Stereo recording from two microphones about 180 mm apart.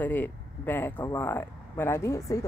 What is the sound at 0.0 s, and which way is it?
Speech, 10° left (ahead or behind).